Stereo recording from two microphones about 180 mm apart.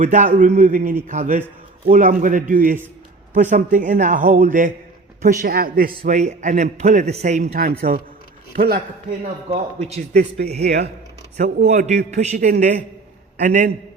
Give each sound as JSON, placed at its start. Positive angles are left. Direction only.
{"t": 0.0, "sound": "a man's voice", "side_deg": -45}
{"t": 7.5, "sound": "speech", "side_deg": -55}
{"t": 9.5, "sound": "a man's voice", "side_deg": -35}
{"t": 10.1, "sound": "speech", "side_deg": -65}
{"t": 11.4, "sound": "a man's voice", "side_deg": -40}